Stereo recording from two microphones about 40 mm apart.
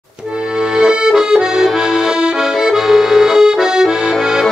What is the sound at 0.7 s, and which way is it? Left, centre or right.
Accordion, centre.